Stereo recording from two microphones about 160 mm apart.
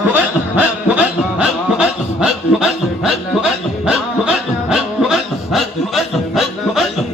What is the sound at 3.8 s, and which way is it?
Music, 5° right (ahead or behind).